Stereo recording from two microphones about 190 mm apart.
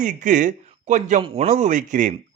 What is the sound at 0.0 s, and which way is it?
A man's voice, 40° right (ahead or behind).